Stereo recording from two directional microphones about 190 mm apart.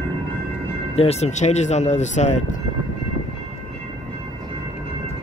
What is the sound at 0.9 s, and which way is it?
Speech, 35° left (ahead or behind).